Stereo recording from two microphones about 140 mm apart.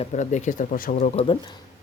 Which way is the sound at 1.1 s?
40° left (ahead or behind).